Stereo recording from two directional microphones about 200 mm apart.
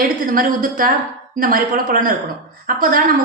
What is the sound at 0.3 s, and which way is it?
A woman's voice, 45° right (ahead or behind).